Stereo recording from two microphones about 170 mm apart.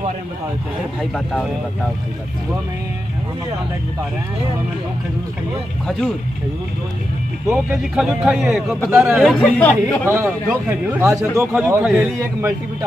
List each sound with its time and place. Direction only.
1.1 s a man's voice: 5° left (ahead or behind)
7.9 s a man's voice: centre (ahead or behind)
9.4 s speech: 10° left (ahead or behind)
10.0 s a man's voice: 15° right (ahead or behind)